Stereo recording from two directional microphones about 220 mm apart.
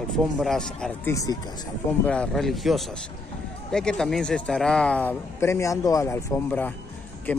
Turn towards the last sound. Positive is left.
turn(degrees=10)  # may be behind; listen again after turning